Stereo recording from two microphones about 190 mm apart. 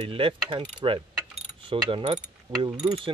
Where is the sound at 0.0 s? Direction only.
30° right (ahead or behind).